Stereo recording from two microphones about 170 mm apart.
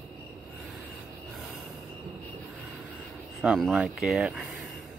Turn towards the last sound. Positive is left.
turn(degrees=-5)  # may be behind; listen again after turning